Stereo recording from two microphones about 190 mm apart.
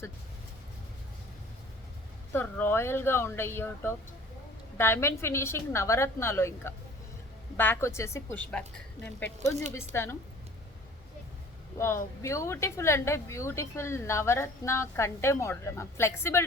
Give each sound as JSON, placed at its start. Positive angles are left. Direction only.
{"t": 2.3, "sound": "a woman's voice", "side_deg": 10}
{"t": 11.8, "sound": "a woman's voice", "side_deg": 15}